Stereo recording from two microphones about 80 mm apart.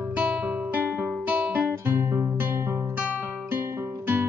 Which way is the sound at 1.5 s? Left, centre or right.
Right.